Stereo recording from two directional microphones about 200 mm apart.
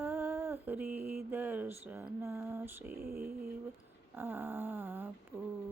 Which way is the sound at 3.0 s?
50° right (ahead or behind).